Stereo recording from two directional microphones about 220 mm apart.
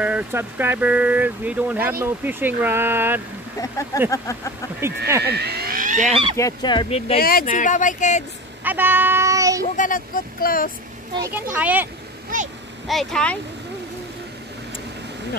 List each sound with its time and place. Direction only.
0.0 s speech: 5° right (ahead or behind)
4.7 s speech: 10° right (ahead or behind)
5.2 s speech: 45° right (ahead or behind); by 6.3 s 30° right (ahead or behind)
6.3 s speech: 15° left (ahead or behind)
7.2 s speech: 40° left (ahead or behind)
8.6 s speech: 10° right (ahead or behind)
9.8 s speech: 40° left (ahead or behind)
11.3 s speech: 10° right (ahead or behind)